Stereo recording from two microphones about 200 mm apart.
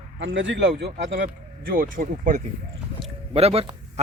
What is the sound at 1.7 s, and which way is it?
A man's voice, 45° right (ahead or behind).